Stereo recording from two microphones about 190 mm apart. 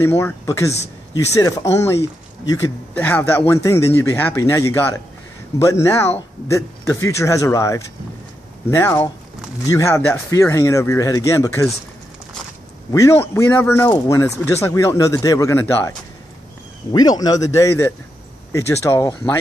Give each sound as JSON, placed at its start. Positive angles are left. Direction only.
{"t": 0.0, "sound": "speech", "side_deg": 15}
{"t": 12.9, "sound": "speech", "side_deg": 15}
{"t": 16.9, "sound": "speech", "side_deg": 20}